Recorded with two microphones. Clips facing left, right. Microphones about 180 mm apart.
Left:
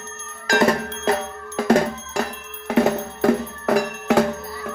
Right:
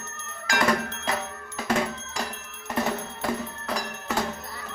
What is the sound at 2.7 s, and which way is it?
Music, 65° left (ahead or behind).